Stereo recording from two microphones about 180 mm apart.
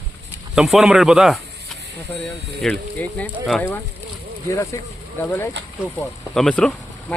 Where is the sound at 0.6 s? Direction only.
Centre (ahead or behind).